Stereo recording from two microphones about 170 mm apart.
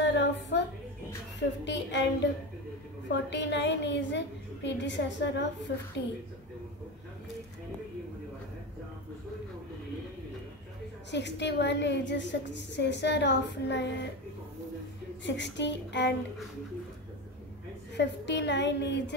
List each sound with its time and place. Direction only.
0.0 s a sound: 90° left
1.6 s a woman's voice: 90° left
3.1 s a woman's voice: 90° left
11.1 s a woman's voice: 90° left
15.2 s a woman's voice: 90° left
17.9 s a woman's voice: 90° left